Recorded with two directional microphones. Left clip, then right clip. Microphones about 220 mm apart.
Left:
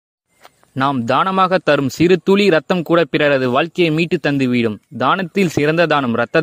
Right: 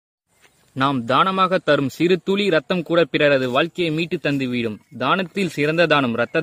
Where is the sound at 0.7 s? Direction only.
25° left (ahead or behind).